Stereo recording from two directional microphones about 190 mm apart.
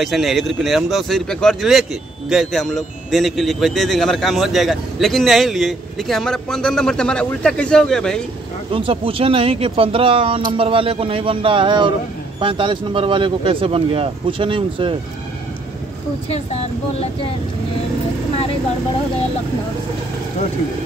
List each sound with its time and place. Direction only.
0.0 s speech: centre (ahead or behind)
8.7 s speech: 30° right (ahead or behind)